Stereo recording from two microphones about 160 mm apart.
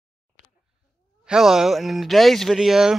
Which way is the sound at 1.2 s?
5° right (ahead or behind).